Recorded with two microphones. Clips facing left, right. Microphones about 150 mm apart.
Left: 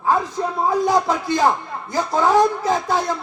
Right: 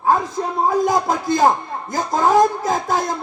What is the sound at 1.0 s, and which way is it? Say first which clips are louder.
Speech: right 2 dB; 45° right (ahead or behind).